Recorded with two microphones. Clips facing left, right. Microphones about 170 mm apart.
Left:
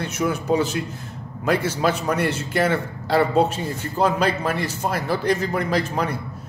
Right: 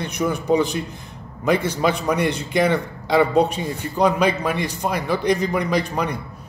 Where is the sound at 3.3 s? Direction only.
15° right (ahead or behind).